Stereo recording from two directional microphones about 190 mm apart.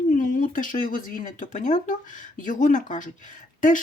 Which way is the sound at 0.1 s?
45° left (ahead or behind).